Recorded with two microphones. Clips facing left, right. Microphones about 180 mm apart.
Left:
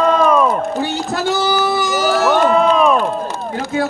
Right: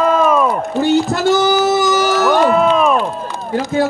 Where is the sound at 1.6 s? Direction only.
40° right (ahead or behind).